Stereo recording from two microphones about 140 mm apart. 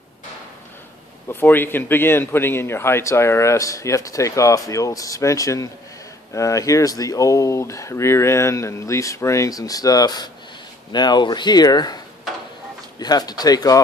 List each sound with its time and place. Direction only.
1.3 s a man's voice: 15° left (ahead or behind)
13.0 s a man's voice: 30° left (ahead or behind)